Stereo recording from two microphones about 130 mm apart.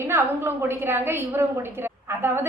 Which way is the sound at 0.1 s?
15° right (ahead or behind).